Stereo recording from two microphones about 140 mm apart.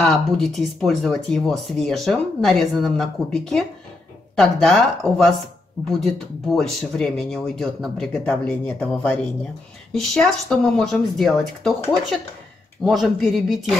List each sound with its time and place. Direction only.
0.0 s speech: 5° left (ahead or behind)